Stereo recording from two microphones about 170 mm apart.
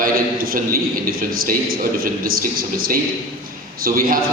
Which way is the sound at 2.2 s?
60° right (ahead or behind).